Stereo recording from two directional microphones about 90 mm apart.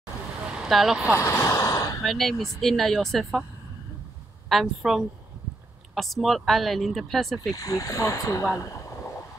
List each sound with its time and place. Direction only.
0.5 s speech: centre (ahead or behind)
1.1 s gasp: 30° left (ahead or behind)
2.0 s speech: centre (ahead or behind)
4.5 s speech: centre (ahead or behind)
7.5 s speech: 40° left (ahead or behind)